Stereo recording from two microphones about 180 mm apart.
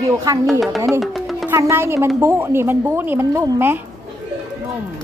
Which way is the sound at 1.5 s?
15° right (ahead or behind).